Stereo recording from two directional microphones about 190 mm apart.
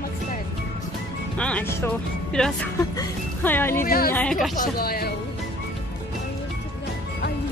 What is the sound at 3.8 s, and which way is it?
Speech, 50° left (ahead or behind).